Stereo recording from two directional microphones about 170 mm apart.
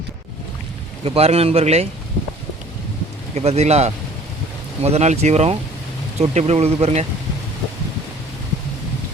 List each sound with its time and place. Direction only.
1.0 s speech: 35° right (ahead or behind)
3.3 s speech: 40° right (ahead or behind)